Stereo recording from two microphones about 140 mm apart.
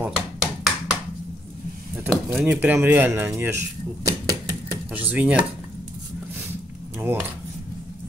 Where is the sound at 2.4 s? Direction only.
15° right (ahead or behind).